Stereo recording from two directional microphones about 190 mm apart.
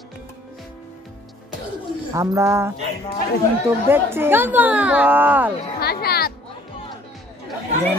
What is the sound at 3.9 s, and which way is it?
Speech, 10° right (ahead or behind).